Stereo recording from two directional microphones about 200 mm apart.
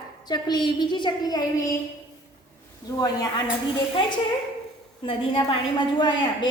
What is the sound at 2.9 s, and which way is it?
Speech, 20° left (ahead or behind).